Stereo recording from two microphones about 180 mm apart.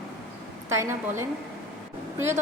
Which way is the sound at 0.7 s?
15° right (ahead or behind).